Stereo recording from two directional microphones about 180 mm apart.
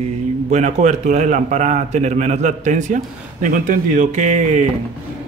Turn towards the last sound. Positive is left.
turn(degrees=-40)  # may be behind; listen again after turning